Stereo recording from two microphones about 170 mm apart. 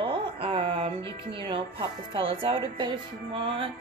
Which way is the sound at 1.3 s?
30° right (ahead or behind).